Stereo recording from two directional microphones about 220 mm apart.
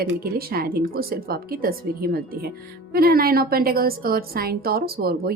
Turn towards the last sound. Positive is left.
turn(degrees=-45)  # may be behind; listen again after turning